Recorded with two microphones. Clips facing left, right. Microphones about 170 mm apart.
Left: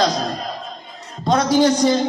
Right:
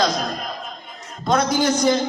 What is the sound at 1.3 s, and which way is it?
Speech, 35° left (ahead or behind).